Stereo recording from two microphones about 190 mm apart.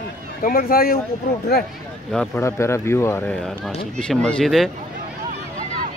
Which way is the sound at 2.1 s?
10° left (ahead or behind).